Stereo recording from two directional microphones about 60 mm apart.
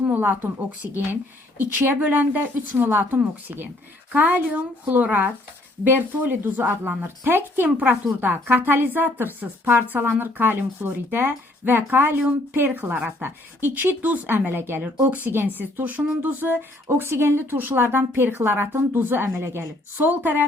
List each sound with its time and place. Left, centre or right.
0.0 s a sound: right
1.5 s a woman's voice: right
20.0 s a woman's voice: right